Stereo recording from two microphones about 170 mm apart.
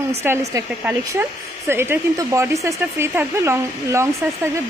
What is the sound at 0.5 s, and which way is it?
Speech, 20° right (ahead or behind).